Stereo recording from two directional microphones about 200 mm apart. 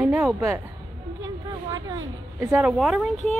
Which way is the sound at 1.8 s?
15° right (ahead or behind).